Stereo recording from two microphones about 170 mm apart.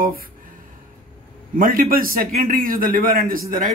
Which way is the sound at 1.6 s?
55° right (ahead or behind).